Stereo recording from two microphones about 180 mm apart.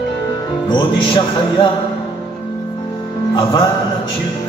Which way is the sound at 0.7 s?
25° left (ahead or behind).